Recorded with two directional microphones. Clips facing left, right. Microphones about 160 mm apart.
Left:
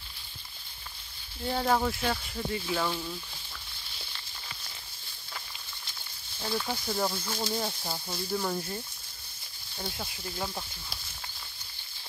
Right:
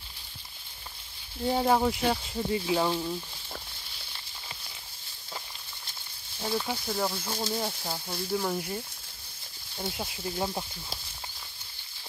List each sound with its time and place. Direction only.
1.4 s speech: 15° right (ahead or behind)
6.4 s speech: 10° right (ahead or behind)
6.9 s speech: centre (ahead or behind); by 10.6 s 20° right (ahead or behind)